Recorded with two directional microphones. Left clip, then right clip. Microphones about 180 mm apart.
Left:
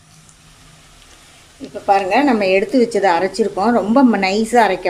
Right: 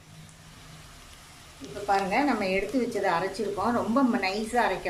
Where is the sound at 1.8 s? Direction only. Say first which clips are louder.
Left 11 dB; 55° left (ahead or behind).